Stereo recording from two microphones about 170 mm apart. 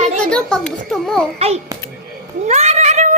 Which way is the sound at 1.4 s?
35° right (ahead or behind).